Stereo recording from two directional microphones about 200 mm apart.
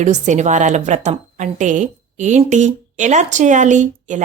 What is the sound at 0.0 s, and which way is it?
A woman's voice, 35° right (ahead or behind).